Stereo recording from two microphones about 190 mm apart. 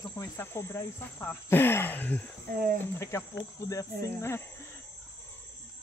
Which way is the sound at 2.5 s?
50° right (ahead or behind).